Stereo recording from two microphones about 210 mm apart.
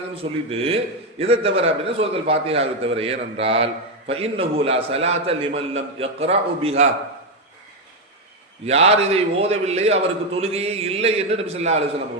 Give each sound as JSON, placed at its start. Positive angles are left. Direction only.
{"t": 0.2, "sound": "a man's voice", "side_deg": -30}
{"t": 8.6, "sound": "a man's voice", "side_deg": -30}